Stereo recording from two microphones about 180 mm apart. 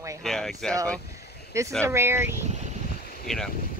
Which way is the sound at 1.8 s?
15° right (ahead or behind).